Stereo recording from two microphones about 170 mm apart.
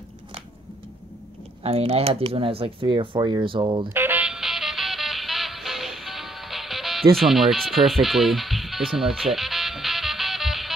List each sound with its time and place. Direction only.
1.6 s speech: 35° right (ahead or behind)
3.9 s music: 10° right (ahead or behind)
7.2 s speech: centre (ahead or behind)